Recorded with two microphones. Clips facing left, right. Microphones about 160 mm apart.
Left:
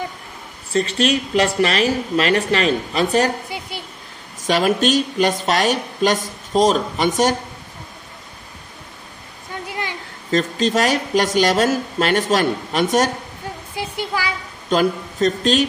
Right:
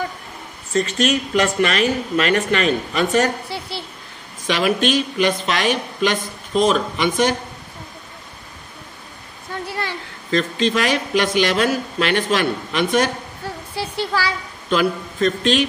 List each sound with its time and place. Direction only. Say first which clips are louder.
0.7 s speech: even; 30° left (ahead or behind)
3.4 s a woman's voice: right 1 dB; 15° left (ahead or behind)
4.5 s speech: left 2 dB; 40° left (ahead or behind)
9.7 s a sound: even; 15° left (ahead or behind)
10.3 s speech: left 1 dB; 40° left (ahead or behind)
13.7 s speech: right 2 dB; 15° left (ahead or behind)
14.7 s a man's voice: left 1 dB; 40° left (ahead or behind)